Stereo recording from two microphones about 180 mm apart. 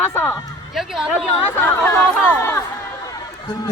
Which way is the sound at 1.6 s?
10° left (ahead or behind).